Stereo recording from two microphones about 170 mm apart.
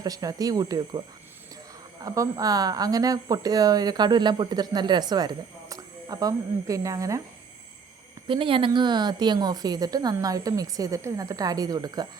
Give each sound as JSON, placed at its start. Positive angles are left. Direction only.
{"t": 0.0, "sound": "speech", "side_deg": -20}
{"t": 2.0, "sound": "speech", "side_deg": -20}
{"t": 8.3, "sound": "speech", "side_deg": -30}